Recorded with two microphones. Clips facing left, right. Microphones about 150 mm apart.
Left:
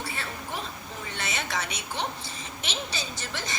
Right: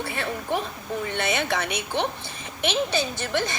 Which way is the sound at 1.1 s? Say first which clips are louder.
Right 6 dB; 55° right (ahead or behind).